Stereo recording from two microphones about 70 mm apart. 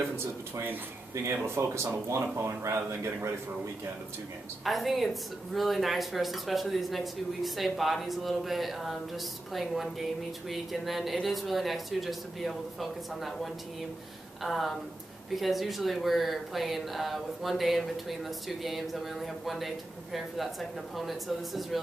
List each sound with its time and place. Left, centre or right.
1.1 s speech: right
4.6 s speech: centre